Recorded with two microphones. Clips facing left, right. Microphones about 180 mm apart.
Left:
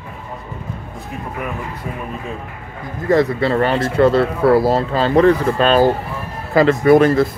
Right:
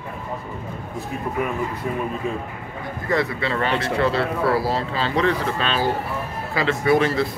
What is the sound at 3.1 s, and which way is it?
Speech, 40° left (ahead or behind).